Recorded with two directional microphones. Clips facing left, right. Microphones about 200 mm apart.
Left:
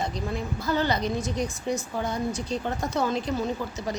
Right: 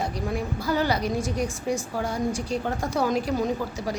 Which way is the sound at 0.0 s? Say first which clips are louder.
Right 2 dB; 10° right (ahead or behind).